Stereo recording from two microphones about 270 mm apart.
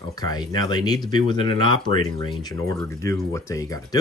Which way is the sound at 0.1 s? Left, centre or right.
Centre.